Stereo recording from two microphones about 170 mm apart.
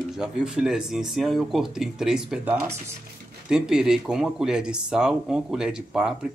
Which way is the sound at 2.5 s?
15° right (ahead or behind).